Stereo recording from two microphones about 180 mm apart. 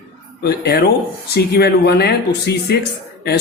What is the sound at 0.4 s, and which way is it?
A child's voice, 65° left (ahead or behind).